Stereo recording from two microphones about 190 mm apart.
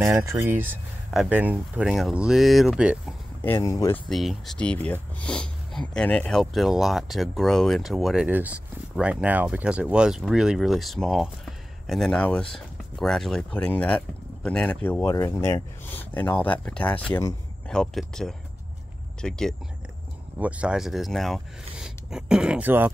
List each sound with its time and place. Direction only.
0.0 s speech: 15° right (ahead or behind)
3.4 s speech: 15° left (ahead or behind)
4.1 s speech: centre (ahead or behind)